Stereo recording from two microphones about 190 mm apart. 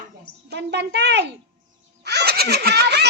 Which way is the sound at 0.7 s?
65° right (ahead or behind).